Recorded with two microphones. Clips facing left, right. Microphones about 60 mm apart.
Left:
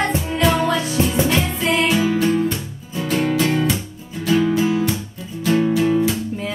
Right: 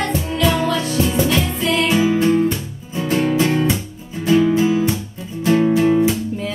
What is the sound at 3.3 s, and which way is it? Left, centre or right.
Music, right.